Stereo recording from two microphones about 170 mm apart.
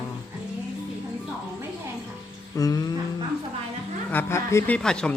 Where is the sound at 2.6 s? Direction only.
20° left (ahead or behind).